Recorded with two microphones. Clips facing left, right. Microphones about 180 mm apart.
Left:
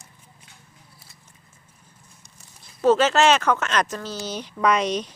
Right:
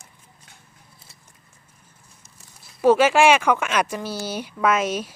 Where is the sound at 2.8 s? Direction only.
10° right (ahead or behind).